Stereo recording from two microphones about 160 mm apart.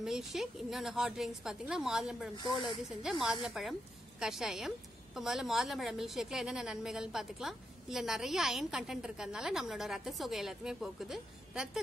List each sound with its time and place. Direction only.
0.0 s a woman's voice: centre (ahead or behind)
2.3 s speech: 25° left (ahead or behind)
3.0 s a woman's voice: 5° right (ahead or behind)